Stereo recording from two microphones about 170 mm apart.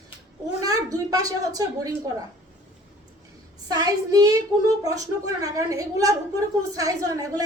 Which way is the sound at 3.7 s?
20° right (ahead or behind).